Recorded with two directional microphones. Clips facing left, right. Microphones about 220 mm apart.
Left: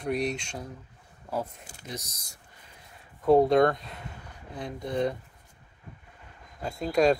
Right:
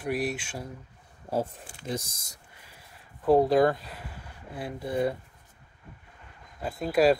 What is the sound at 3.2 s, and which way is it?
Speech, centre (ahead or behind).